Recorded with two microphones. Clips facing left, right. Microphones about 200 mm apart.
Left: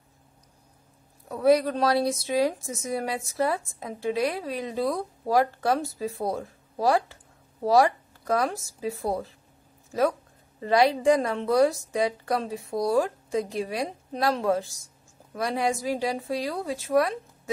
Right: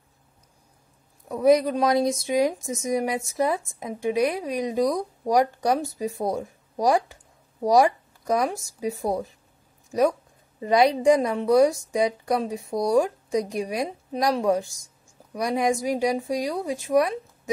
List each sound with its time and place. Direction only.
1.3 s a woman's voice: 15° right (ahead or behind)
10.6 s a woman's voice: 15° right (ahead or behind)